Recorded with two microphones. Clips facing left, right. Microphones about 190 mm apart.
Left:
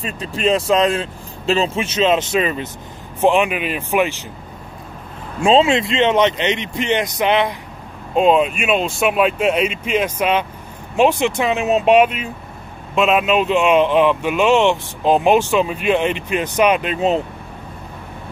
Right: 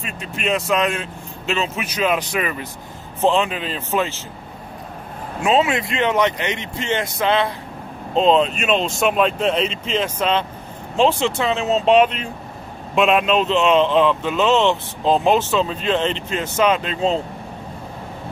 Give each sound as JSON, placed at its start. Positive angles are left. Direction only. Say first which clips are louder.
{"t": 0.0, "sound": "a man's voice", "louder": "left 6 dB", "side_deg": 35}
{"t": 5.4, "sound": "a man's voice", "louder": "left 4 dB", "side_deg": 30}